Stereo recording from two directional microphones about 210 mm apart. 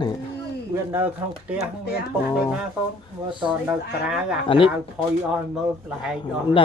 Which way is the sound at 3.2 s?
20° right (ahead or behind).